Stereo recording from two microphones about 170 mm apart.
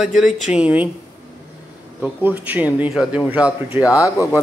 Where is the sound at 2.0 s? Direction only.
10° right (ahead or behind).